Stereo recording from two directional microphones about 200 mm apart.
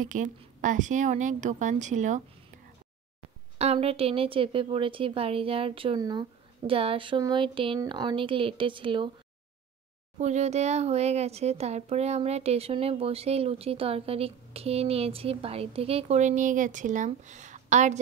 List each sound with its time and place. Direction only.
0.0 s speech: 40° right (ahead or behind)
3.5 s speech: 30° right (ahead or behind)
10.1 s speech: 35° right (ahead or behind)